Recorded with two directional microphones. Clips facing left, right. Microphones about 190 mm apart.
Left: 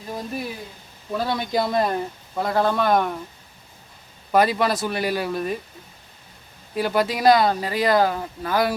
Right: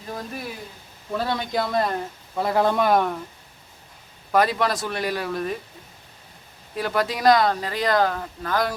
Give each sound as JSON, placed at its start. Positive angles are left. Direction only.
{"t": 1.1, "sound": "speech", "side_deg": 0}
{"t": 1.5, "sound": "speech", "side_deg": 15}
{"t": 2.3, "sound": "speech", "side_deg": -5}
{"t": 2.9, "sound": "speech", "side_deg": 0}
{"t": 4.3, "sound": "speech", "side_deg": 5}
{"t": 6.7, "sound": "speech", "side_deg": 5}